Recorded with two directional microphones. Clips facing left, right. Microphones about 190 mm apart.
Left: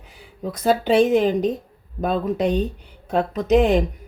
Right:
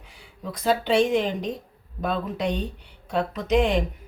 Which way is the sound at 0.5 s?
45° left (ahead or behind).